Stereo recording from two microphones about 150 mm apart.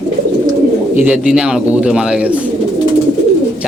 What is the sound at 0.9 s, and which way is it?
Speech, 5° right (ahead or behind).